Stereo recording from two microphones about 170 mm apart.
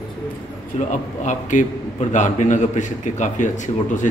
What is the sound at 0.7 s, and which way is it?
A man's voice, 45° left (ahead or behind).